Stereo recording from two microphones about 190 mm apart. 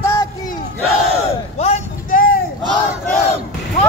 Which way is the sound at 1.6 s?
35° left (ahead or behind).